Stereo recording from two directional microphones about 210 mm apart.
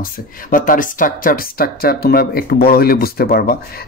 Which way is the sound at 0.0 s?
40° left (ahead or behind).